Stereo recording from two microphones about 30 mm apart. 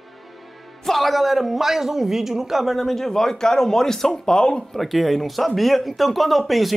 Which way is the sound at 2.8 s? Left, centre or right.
Centre.